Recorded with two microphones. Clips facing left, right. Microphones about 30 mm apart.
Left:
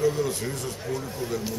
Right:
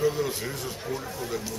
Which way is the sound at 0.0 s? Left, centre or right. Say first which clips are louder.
Left 1 dB; centre.